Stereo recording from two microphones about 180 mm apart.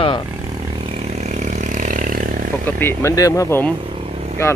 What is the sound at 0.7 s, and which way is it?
Vehicle, 30° right (ahead or behind).